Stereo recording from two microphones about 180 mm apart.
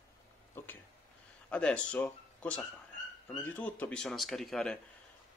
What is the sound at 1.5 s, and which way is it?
Speech, 5° left (ahead or behind).